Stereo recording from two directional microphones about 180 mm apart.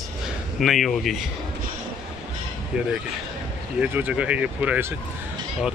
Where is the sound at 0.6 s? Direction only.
Centre (ahead or behind).